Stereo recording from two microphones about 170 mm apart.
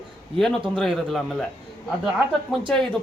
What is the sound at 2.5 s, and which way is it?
Speech, 5° left (ahead or behind).